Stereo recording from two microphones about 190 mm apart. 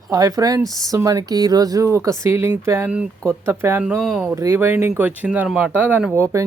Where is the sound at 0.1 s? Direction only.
20° right (ahead or behind).